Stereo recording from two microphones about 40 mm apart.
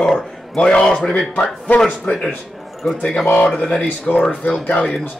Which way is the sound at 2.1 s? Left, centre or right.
Left.